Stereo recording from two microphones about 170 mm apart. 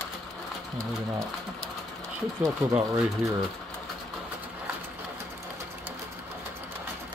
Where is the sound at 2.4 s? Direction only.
20° right (ahead or behind).